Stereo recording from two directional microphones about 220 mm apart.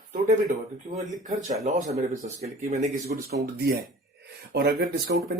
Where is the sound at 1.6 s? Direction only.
30° right (ahead or behind).